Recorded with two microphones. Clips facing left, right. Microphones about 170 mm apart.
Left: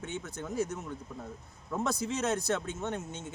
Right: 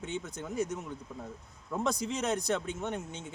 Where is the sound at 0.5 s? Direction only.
15° right (ahead or behind).